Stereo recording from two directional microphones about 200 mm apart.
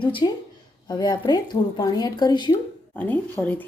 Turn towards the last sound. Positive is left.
turn(degrees=10)  # may be behind; listen again after turning